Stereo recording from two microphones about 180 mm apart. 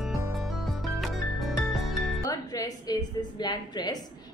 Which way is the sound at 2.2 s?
20° left (ahead or behind).